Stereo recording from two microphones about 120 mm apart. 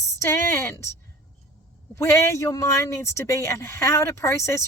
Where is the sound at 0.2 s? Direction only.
25° left (ahead or behind).